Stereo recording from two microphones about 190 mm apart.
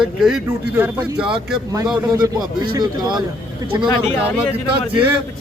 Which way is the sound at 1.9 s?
20° right (ahead or behind).